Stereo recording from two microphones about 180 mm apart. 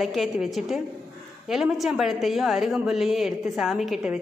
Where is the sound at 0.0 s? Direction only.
Centre (ahead or behind).